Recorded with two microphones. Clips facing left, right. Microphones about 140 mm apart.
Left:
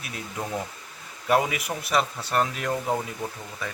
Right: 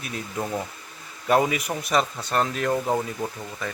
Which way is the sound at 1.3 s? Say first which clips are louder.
Right 2 dB; 5° left (ahead or behind).